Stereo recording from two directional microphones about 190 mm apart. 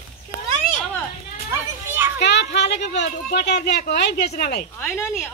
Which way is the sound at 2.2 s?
65° left (ahead or behind).